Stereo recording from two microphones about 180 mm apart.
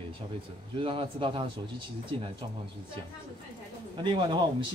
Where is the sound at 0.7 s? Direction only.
30° right (ahead or behind).